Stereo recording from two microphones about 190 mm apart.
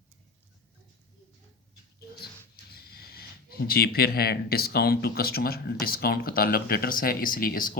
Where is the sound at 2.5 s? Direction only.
55° left (ahead or behind).